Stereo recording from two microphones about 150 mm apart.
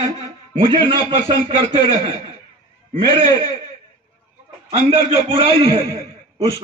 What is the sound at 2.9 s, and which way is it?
Speech, 35° right (ahead or behind).